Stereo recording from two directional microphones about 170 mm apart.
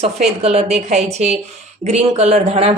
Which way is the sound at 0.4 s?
40° right (ahead or behind).